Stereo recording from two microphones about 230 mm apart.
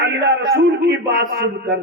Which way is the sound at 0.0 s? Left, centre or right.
Right.